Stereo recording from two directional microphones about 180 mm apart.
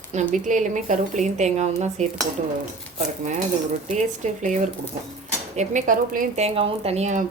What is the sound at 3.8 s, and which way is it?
Speech, 40° right (ahead or behind).